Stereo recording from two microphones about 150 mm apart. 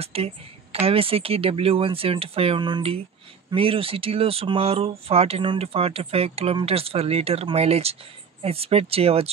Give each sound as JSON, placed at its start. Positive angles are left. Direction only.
{"t": 0.0, "sound": "speech", "side_deg": -40}